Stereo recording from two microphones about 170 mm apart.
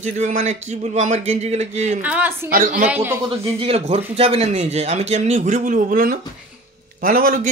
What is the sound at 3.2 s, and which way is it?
A man's voice, 35° right (ahead or behind).